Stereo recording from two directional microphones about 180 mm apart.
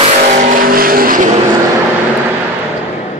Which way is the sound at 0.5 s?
50° right (ahead or behind).